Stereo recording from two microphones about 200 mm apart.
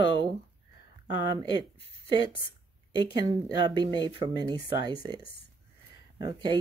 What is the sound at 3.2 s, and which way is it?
Speech, 20° right (ahead or behind).